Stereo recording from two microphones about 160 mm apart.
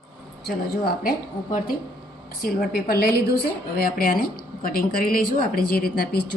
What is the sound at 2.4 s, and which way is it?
A woman's voice, 75° left (ahead or behind).